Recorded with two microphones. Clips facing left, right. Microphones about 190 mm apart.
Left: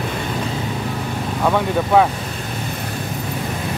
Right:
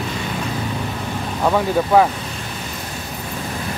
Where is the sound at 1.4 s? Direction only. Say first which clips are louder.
Right 1 dB; 5° right (ahead or behind).